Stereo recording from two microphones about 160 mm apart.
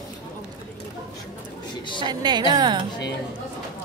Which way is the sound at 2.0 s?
25° right (ahead or behind).